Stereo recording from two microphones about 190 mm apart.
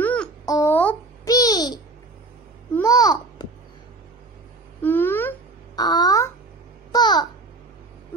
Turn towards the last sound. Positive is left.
turn(degrees=20)  # may be behind; listen again after turning